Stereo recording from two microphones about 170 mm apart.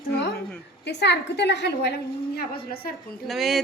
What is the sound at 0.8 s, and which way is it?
A woman's voice, 85° left.